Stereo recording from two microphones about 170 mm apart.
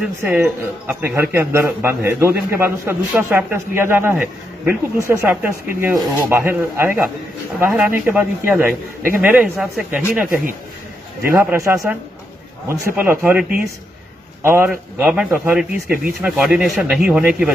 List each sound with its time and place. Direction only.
0.0 s a man's voice: 10° right (ahead or behind)
11.6 s a man's voice: 20° right (ahead or behind)